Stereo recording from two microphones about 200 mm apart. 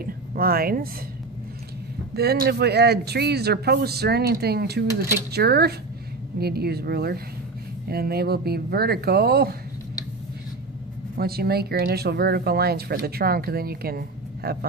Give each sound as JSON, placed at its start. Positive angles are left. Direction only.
{"t": 0.0, "sound": "a woman's voice", "side_deg": -45}
{"t": 2.1, "sound": "speech", "side_deg": -55}
{"t": 11.1, "sound": "speech", "side_deg": -50}